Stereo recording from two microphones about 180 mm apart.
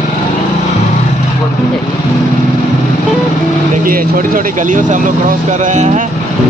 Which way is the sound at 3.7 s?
50° right (ahead or behind).